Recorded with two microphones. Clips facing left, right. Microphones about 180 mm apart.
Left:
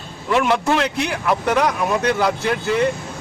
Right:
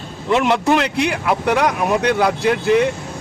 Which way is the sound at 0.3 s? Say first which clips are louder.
Right 2 dB; 20° right (ahead or behind).